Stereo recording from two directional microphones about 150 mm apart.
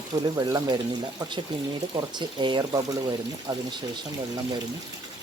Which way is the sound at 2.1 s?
30° right (ahead or behind).